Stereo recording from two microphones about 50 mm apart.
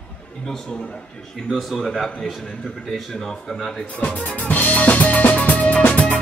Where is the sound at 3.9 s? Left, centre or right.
Left.